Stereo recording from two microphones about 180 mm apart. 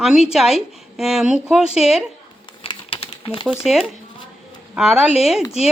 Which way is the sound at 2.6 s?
30° left (ahead or behind).